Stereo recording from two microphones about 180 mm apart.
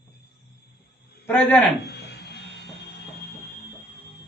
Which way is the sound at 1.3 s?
10° left (ahead or behind).